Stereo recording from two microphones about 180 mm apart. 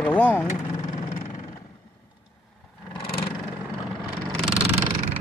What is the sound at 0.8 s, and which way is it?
Vehicle, 40° left (ahead or behind).